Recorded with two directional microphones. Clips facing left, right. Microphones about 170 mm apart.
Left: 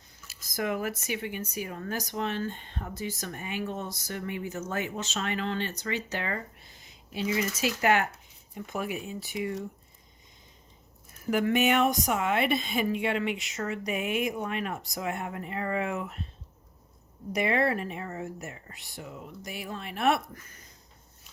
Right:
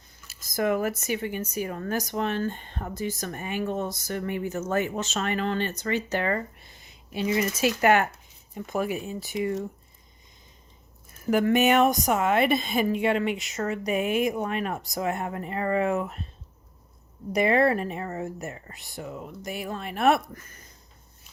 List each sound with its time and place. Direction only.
0.3 s speech: 50° right (ahead or behind)
8.5 s a woman's voice: 40° right (ahead or behind)
11.3 s a woman's voice: 45° right (ahead or behind)
17.3 s speech: 40° right (ahead or behind)